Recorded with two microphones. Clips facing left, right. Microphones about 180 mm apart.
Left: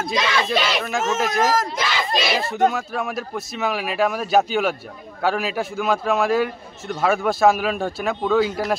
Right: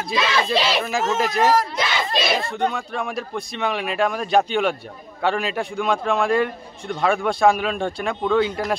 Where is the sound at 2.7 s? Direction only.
5° left (ahead or behind).